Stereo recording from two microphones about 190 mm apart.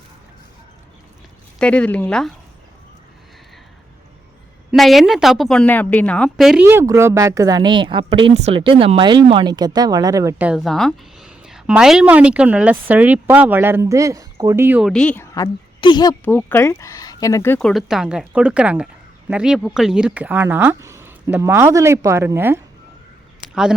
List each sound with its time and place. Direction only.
1.5 s a woman's voice: 5° left (ahead or behind)
4.7 s a woman's voice: centre (ahead or behind)
6.7 s speech: 15° right (ahead or behind)
14.8 s speech: 5° left (ahead or behind)
15.8 s speech: 25° left (ahead or behind)
16.2 s speech: 10° left (ahead or behind)
17.6 s a woman's voice: centre (ahead or behind)